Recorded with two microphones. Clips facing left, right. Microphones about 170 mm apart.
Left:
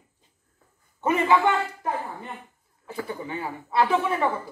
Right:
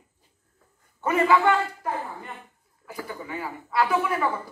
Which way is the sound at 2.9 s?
25° left (ahead or behind).